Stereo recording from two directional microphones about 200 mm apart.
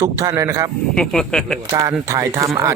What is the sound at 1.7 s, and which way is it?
Speech, 15° right (ahead or behind).